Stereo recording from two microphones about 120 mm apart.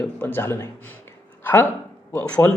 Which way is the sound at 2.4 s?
15° left (ahead or behind).